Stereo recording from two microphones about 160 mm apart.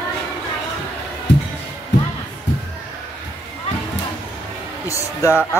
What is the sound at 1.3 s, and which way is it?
Music, 90° left.